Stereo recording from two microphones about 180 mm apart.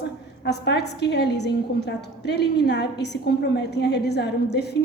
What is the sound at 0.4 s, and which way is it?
A woman's voice, 70° left (ahead or behind).